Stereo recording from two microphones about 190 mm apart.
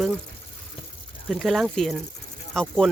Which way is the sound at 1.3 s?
Centre (ahead or behind).